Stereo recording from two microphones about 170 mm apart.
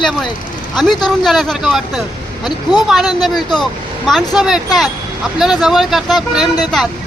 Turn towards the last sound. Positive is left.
turn(degrees=0)  # may be behind; listen again after turning